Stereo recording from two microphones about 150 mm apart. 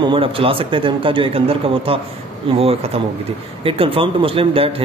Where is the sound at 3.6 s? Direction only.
35° right (ahead or behind).